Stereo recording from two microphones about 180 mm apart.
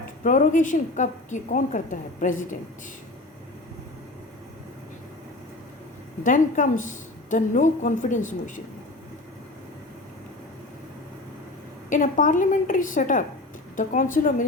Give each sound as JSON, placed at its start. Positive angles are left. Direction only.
{"t": 0.2, "sound": "a woman's voice", "side_deg": 45}
{"t": 6.2, "sound": "a woman's voice", "side_deg": 45}
{"t": 11.9, "sound": "a woman's voice", "side_deg": 45}